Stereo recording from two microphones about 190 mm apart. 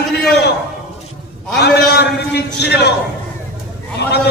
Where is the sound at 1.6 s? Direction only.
60° left (ahead or behind).